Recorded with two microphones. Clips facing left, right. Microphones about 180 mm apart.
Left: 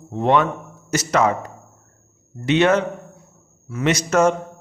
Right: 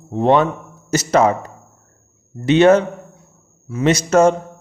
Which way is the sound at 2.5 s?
35° right (ahead or behind).